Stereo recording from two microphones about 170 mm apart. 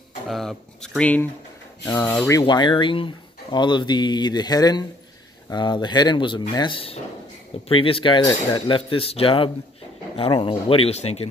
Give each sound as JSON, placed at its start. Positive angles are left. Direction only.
{"t": 0.3, "sound": "speech", "side_deg": 0}
{"t": 2.4, "sound": "speech", "side_deg": 25}